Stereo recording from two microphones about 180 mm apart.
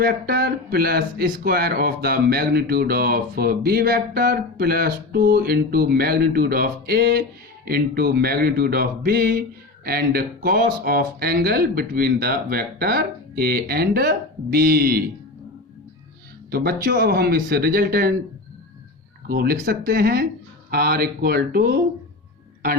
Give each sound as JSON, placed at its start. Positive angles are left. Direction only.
{"t": 0.0, "sound": "speech", "side_deg": -55}
{"t": 16.5, "sound": "speech", "side_deg": -60}
{"t": 19.3, "sound": "speech", "side_deg": -55}